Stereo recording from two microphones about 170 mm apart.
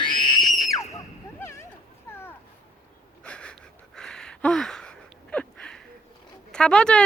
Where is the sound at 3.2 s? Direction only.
5° left (ahead or behind).